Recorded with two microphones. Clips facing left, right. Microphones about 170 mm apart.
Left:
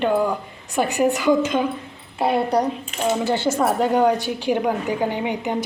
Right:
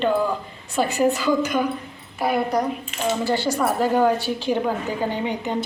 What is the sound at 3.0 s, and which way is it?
A woman's voice, 20° left (ahead or behind).